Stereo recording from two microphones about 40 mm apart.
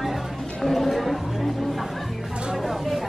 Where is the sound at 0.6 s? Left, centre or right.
Centre.